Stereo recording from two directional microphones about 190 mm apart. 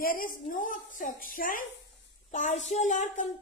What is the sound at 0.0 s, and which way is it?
A child's voice, 45° left (ahead or behind).